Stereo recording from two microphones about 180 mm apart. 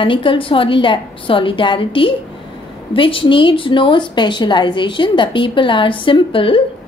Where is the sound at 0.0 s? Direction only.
30° left (ahead or behind).